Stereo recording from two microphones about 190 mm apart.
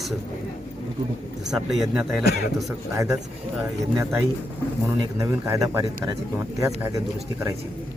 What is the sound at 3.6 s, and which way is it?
Speech, 10° right (ahead or behind).